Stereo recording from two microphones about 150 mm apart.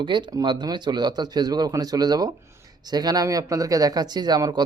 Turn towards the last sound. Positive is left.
turn(degrees=-25)  # may be behind; listen again after turning